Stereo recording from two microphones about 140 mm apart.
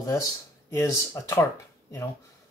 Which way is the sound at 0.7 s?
25° left (ahead or behind).